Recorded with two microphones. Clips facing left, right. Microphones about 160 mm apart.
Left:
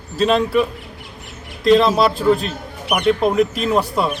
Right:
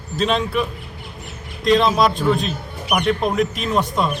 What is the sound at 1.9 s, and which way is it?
Speech, 30° left (ahead or behind).